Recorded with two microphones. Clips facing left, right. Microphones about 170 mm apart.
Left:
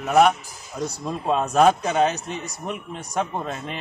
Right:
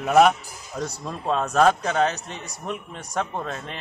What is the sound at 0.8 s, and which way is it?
A man's voice, 10° left (ahead or behind).